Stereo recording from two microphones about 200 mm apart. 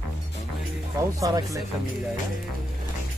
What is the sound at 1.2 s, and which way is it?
Speech, 20° right (ahead or behind).